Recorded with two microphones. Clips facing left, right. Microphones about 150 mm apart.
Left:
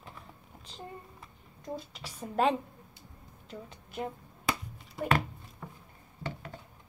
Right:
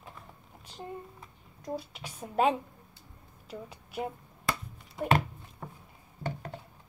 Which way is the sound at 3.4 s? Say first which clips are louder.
Right 2 dB; 5° right (ahead or behind).